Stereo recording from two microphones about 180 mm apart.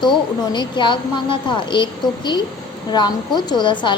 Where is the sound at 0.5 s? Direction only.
25° left (ahead or behind).